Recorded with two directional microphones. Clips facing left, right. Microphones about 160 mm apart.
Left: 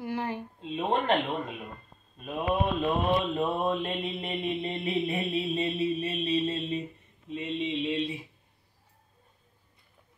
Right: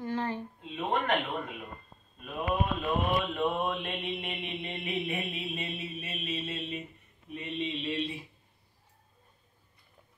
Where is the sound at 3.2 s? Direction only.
35° left (ahead or behind).